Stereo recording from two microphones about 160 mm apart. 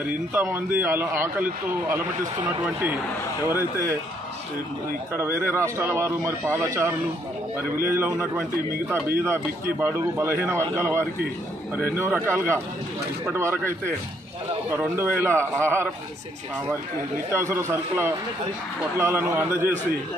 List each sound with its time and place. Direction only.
0.0 s speech: 10° right (ahead or behind)
5.1 s speech: 15° right (ahead or behind)
17.3 s speech: 15° right (ahead or behind)